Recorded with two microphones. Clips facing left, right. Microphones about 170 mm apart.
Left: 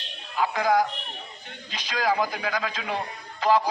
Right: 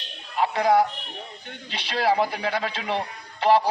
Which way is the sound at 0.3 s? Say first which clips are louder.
Right 3 dB; 30° right (ahead or behind).